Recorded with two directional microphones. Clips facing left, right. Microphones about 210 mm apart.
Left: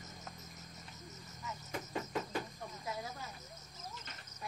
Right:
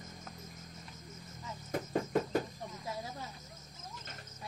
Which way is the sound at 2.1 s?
45° right (ahead or behind).